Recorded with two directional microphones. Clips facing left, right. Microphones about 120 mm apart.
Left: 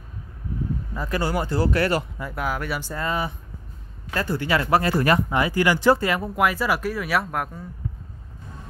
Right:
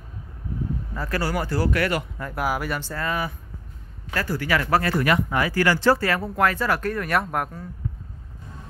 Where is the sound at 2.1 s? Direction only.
5° left (ahead or behind).